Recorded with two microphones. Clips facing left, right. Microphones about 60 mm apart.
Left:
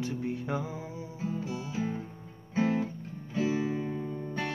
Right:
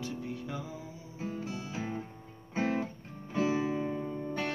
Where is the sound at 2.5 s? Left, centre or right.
Right.